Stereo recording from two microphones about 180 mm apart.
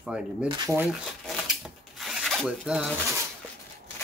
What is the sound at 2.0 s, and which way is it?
Zipper, centre (ahead or behind).